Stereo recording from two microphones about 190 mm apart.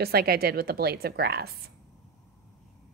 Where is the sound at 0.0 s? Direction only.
55° right (ahead or behind).